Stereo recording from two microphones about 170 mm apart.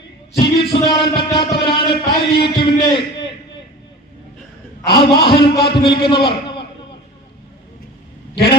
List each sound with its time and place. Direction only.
0.3 s music: 30° left (ahead or behind)
2.4 s a man's voice: 30° left (ahead or behind)
4.9 s a man's voice: 30° left (ahead or behind)
6.2 s a sound: 30° left (ahead or behind)